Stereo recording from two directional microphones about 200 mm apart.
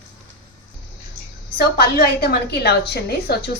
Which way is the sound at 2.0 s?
55° left (ahead or behind).